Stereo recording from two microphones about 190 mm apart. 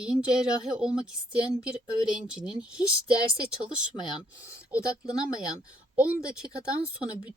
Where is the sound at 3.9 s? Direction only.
25° left (ahead or behind).